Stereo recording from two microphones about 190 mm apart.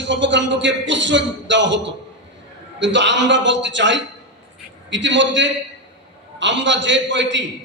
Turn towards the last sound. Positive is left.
turn(degrees=-70)  # may be behind; listen again after turning